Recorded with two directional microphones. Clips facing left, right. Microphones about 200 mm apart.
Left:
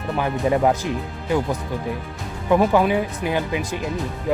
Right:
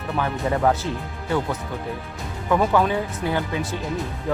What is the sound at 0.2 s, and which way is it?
Speech, 15° left (ahead or behind).